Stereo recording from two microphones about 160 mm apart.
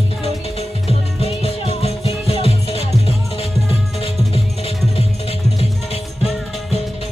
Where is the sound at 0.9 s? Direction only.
40° left (ahead or behind).